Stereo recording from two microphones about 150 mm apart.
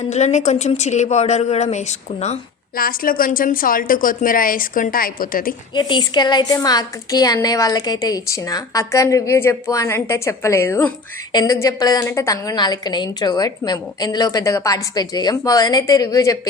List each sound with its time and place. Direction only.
0.1 s a woman's voice: 50° left (ahead or behind)
2.7 s a woman's voice: 75° left (ahead or behind)
5.7 s a woman's voice: 30° left (ahead or behind)